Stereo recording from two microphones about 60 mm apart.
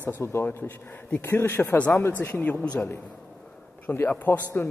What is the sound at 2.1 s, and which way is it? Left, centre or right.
Speech, left.